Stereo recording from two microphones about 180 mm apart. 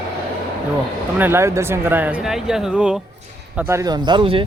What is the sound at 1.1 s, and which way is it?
Speech, 10° right (ahead or behind).